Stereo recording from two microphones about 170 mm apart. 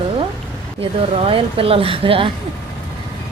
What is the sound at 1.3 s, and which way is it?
A woman's voice, 35° right (ahead or behind).